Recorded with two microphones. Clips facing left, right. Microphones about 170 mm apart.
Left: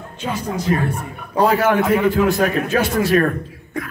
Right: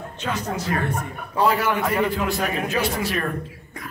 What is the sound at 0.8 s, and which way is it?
A man's voice, 40° left (ahead or behind).